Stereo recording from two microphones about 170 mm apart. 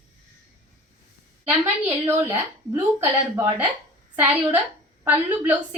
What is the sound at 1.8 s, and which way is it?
Speech, 15° right (ahead or behind).